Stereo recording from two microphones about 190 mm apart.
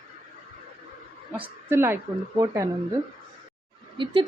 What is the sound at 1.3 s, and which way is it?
A woman's voice, 10° right (ahead or behind).